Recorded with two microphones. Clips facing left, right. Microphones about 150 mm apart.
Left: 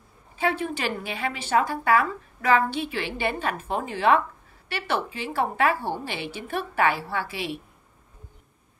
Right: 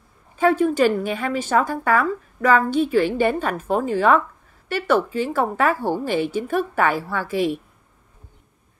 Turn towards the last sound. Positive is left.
turn(degrees=-45)  # may be behind; listen again after turning